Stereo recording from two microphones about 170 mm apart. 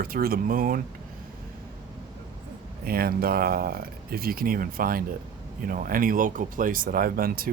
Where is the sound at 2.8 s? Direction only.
60° right (ahead or behind).